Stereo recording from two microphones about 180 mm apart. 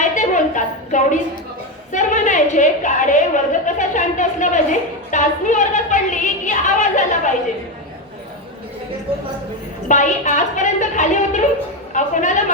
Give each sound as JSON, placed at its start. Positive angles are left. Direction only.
{"t": 0.0, "sound": "a sound", "side_deg": 45}
{"t": 1.9, "sound": "a woman's voice", "side_deg": 45}
{"t": 9.9, "sound": "a woman's voice", "side_deg": 40}